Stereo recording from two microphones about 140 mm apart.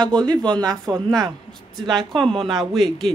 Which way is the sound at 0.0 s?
30° right (ahead or behind).